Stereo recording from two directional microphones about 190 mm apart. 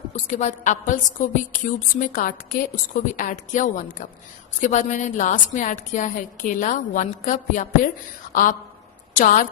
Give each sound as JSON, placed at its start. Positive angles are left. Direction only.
{"t": 0.3, "sound": "a woman's voice", "side_deg": 40}